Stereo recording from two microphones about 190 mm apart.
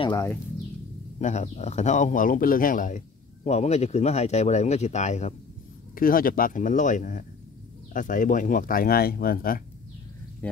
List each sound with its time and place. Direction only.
0.0 s speech: 25° left (ahead or behind)
1.2 s speech: 35° left (ahead or behind)
5.9 s speech: 50° left (ahead or behind)
10.4 s speech: 10° left (ahead or behind)